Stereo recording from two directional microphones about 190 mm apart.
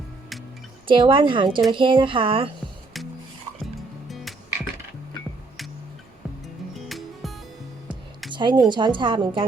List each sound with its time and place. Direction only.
0.9 s a woman's voice: 25° right (ahead or behind)
4.1 s music: centre (ahead or behind)
6.7 s music: centre (ahead or behind)
8.3 s music: 25° right (ahead or behind)
8.7 s a woman's voice: 25° right (ahead or behind)